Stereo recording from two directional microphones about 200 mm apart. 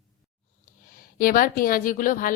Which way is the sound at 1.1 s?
45° left (ahead or behind).